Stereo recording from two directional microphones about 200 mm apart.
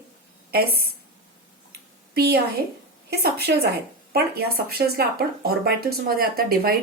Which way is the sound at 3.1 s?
50° right (ahead or behind).